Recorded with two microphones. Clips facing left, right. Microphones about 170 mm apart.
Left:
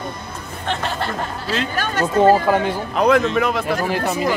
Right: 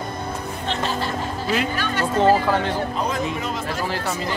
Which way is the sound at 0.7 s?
60° left (ahead or behind).